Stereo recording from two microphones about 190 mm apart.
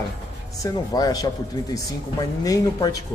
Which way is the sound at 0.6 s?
20° left (ahead or behind).